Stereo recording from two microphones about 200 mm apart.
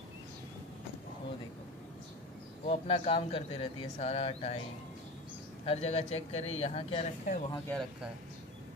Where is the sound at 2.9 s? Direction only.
30° left (ahead or behind).